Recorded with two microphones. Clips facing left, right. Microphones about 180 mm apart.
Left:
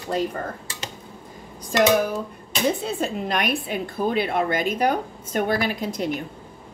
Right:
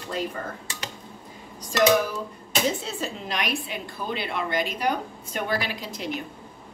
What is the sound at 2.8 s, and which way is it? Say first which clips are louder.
A woman's voice: left 6 dB; 55° left (ahead or behind).